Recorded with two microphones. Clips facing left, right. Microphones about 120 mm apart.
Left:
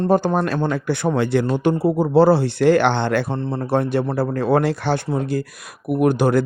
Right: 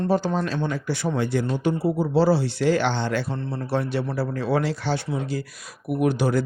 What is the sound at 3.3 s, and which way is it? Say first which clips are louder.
Speech: left 6 dB; 30° left (ahead or behind).